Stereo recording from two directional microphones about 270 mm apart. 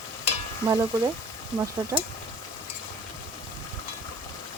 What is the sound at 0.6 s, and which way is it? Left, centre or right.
Speech, centre.